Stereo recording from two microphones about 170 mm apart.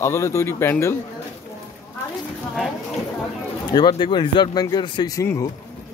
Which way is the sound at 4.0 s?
25° left (ahead or behind).